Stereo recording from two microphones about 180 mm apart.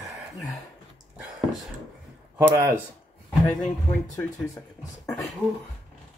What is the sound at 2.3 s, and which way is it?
Speech, 15° right (ahead or behind).